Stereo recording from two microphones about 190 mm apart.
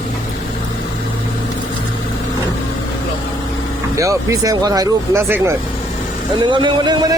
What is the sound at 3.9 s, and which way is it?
Speech, 15° right (ahead or behind).